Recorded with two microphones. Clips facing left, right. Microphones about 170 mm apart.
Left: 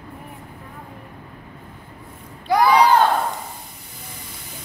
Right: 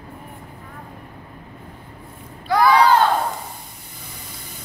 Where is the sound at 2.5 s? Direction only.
20° left (ahead or behind).